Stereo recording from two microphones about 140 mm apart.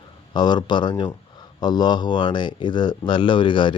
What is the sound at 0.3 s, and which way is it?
Speech, 30° left (ahead or behind).